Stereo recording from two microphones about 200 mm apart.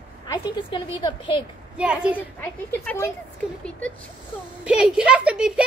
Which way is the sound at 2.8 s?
10° left (ahead or behind).